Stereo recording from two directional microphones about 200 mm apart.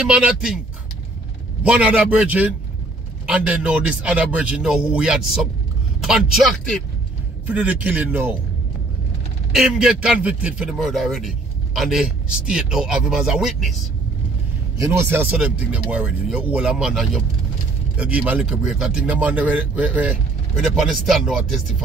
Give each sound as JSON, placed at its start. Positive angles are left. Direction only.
{"t": 0.0, "sound": "speech", "side_deg": -5}
{"t": 1.6, "sound": "speech", "side_deg": -5}
{"t": 9.5, "sound": "speech", "side_deg": 0}
{"t": 14.8, "sound": "speech", "side_deg": -10}